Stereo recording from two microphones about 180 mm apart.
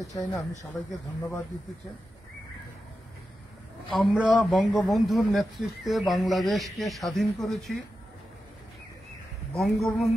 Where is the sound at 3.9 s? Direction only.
Centre (ahead or behind).